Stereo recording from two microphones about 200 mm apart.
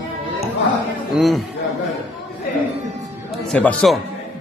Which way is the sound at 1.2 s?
Centre (ahead or behind).